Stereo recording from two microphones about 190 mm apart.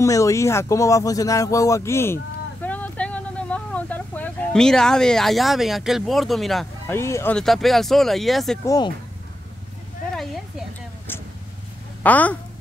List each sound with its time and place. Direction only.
0.0 s speech: 15° left (ahead or behind)
2.6 s vehicle: 10° left (ahead or behind)
6.9 s speech: 15° left (ahead or behind)
7.3 s speech: centre (ahead or behind)
8.6 s speech: 20° left (ahead or behind)
12.0 s a woman's voice: 10° left (ahead or behind)